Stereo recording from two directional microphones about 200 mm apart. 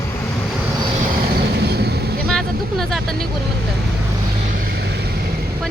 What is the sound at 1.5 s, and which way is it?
Vehicle, 55° right (ahead or behind).